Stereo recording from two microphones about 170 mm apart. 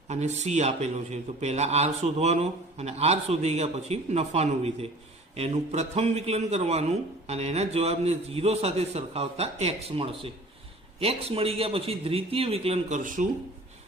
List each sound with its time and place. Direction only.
0.1 s a man's voice: 40° right (ahead or behind)
13.0 s speech: 50° right (ahead or behind)